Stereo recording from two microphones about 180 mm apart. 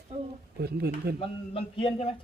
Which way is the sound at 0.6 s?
65° right (ahead or behind).